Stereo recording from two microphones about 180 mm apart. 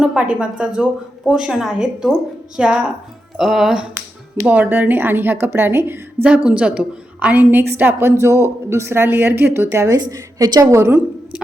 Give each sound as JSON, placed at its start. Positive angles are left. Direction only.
{"t": 0.0, "sound": "a woman's voice", "side_deg": -5}